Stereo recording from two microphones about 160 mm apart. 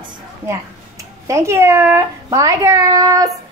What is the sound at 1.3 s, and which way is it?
A woman's voice, 15° right (ahead or behind).